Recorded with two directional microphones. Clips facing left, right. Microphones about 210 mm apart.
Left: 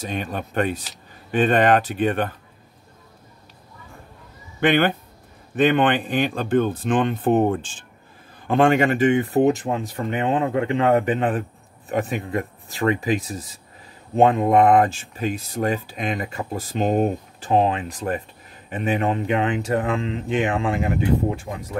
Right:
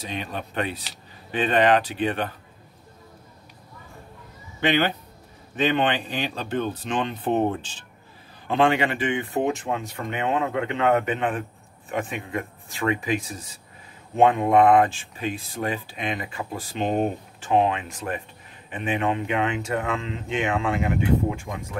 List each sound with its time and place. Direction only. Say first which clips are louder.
0.0 s speech: left 4 dB; 45° left (ahead or behind)
4.6 s speech: left 4 dB; 50° left (ahead or behind); by 21.6 s 35° left (ahead or behind)